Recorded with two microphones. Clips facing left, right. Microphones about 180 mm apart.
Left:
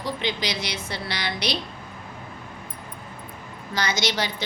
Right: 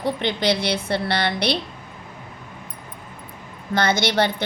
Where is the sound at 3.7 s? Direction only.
55° right (ahead or behind).